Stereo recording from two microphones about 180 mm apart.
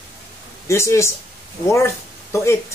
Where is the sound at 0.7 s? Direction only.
15° left (ahead or behind).